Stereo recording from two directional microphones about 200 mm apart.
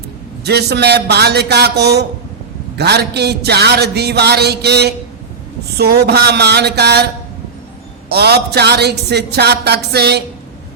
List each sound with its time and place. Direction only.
0.4 s speech: 55° right (ahead or behind)
8.1 s speech: 55° right (ahead or behind)